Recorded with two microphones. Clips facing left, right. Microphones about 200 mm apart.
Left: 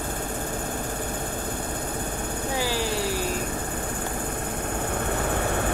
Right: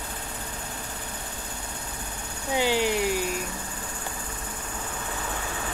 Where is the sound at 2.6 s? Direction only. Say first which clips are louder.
Right 5 dB; 20° right (ahead or behind).